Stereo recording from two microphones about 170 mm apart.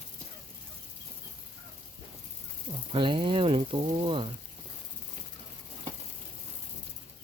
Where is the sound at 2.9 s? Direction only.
30° right (ahead or behind).